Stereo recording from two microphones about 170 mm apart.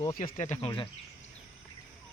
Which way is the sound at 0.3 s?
40° left (ahead or behind).